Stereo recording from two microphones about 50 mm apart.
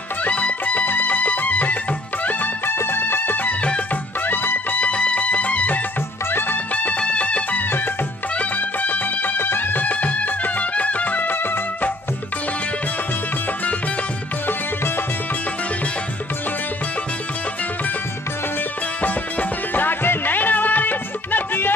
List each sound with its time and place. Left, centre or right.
0.2 s music: left
3.6 s music: left
4.3 s music: left
4.7 s music: left
6.3 s music: left
6.7 s music: left
9.4 s music: left
18.9 s music: left